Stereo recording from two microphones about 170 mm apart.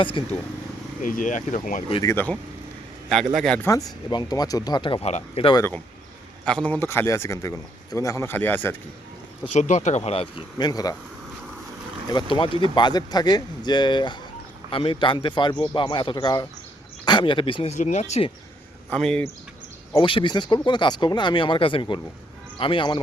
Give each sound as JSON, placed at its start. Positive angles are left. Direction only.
{"t": 0.0, "sound": "speech", "side_deg": 30}
{"t": 1.0, "sound": "speech", "side_deg": 50}
{"t": 2.0, "sound": "a man's voice", "side_deg": 10}
{"t": 3.7, "sound": "speech", "side_deg": 25}
{"t": 6.4, "sound": "speech", "side_deg": 5}
{"t": 9.5, "sound": "speech", "side_deg": 45}
{"t": 12.0, "sound": "speech", "side_deg": 25}
{"t": 18.9, "sound": "a man's voice", "side_deg": 5}
{"t": 20.0, "sound": "speech", "side_deg": 30}